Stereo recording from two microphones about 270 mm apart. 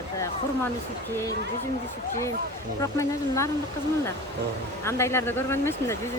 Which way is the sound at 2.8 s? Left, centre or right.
Centre.